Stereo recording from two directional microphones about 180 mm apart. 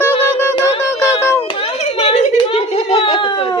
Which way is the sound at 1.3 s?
30° left (ahead or behind).